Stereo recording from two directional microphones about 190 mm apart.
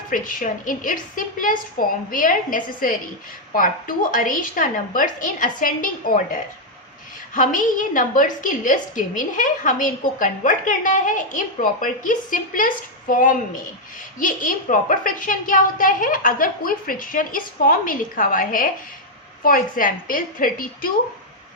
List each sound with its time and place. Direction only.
0.1 s a woman's voice: 45° left (ahead or behind)
7.3 s a woman's voice: 45° left (ahead or behind)